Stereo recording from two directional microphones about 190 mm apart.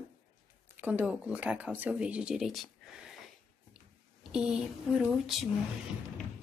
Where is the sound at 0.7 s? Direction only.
10° right (ahead or behind).